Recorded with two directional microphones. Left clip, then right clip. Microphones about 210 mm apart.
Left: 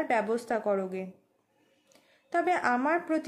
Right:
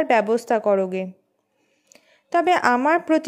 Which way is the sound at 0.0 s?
40° right (ahead or behind).